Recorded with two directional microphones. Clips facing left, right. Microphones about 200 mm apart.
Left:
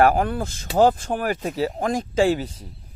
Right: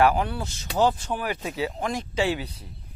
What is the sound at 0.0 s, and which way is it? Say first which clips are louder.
Speech: left 3 dB; 50° left (ahead or behind).